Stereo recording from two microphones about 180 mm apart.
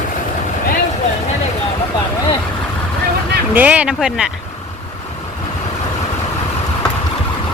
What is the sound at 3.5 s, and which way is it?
Speech, 10° right (ahead or behind).